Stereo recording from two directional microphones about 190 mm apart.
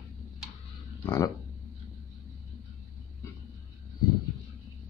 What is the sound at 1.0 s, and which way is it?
Speech, 20° left (ahead or behind).